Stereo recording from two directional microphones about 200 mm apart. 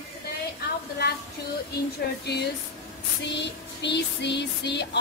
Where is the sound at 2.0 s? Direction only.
50° left (ahead or behind).